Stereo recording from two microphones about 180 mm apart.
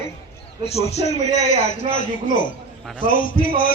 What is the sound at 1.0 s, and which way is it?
Speech, 30° right (ahead or behind).